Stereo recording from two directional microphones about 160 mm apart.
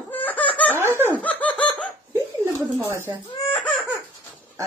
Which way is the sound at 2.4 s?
20° right (ahead or behind).